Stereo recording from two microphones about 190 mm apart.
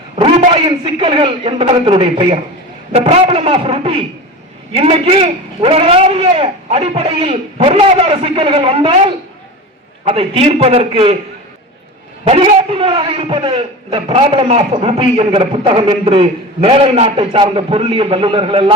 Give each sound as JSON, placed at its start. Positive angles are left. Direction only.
{"t": 0.2, "sound": "a man's voice", "side_deg": -30}
{"t": 12.2, "sound": "a man's voice", "side_deg": -30}